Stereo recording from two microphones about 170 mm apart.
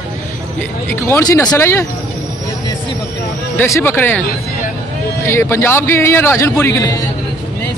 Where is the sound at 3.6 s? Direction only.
15° left (ahead or behind).